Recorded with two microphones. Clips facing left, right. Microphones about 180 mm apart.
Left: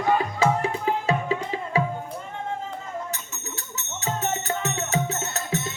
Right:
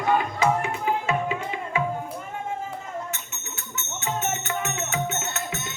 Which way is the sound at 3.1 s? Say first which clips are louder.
Left 2 dB; 35° left (ahead or behind).